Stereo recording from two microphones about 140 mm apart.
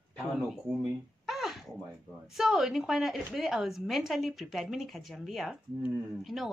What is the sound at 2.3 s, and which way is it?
Speech, 5° right (ahead or behind).